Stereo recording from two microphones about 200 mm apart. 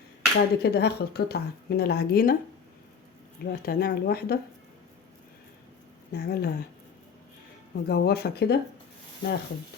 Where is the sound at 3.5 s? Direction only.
50° left (ahead or behind).